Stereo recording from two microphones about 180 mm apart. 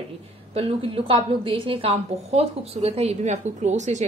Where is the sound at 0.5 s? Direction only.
30° right (ahead or behind).